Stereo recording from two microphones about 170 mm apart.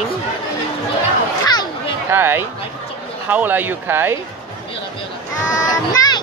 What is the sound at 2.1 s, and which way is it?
Speech, 15° right (ahead or behind).